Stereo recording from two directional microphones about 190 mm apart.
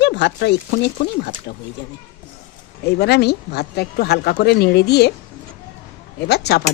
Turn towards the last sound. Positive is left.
turn(degrees=60)  # may be behind; listen again after turning